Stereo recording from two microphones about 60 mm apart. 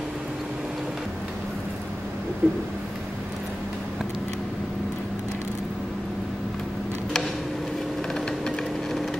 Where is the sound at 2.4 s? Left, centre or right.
Right.